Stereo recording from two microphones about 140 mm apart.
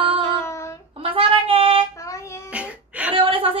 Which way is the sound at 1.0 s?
40° right (ahead or behind).